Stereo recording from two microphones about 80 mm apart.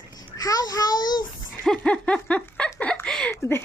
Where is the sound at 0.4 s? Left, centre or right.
Left.